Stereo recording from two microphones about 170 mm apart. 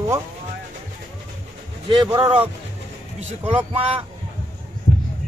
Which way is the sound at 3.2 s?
40° right (ahead or behind).